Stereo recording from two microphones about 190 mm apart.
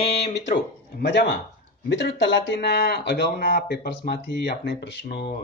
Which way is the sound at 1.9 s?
65° left (ahead or behind).